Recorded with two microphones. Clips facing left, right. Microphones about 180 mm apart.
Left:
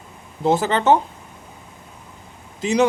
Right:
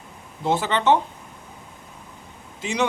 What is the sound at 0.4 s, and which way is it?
Speech, 40° left (ahead or behind).